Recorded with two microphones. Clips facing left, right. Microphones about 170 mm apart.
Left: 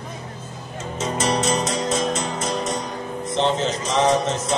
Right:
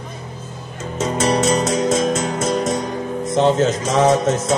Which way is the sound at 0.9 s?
40° right (ahead or behind).